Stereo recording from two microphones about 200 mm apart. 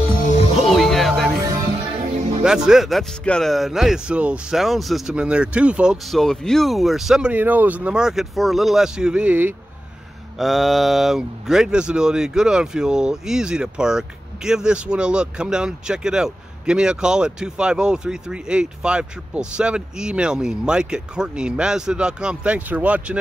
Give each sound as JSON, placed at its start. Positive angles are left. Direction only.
{"t": 0.7, "sound": "music", "side_deg": 0}
{"t": 1.4, "sound": "music", "side_deg": -15}
{"t": 2.0, "sound": "music", "side_deg": -35}
{"t": 2.4, "sound": "speech", "side_deg": -5}